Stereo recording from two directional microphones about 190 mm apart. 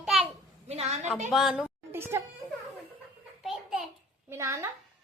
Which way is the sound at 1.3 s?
Centre (ahead or behind).